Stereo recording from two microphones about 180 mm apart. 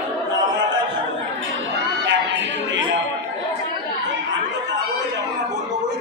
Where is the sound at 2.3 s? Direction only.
90° right.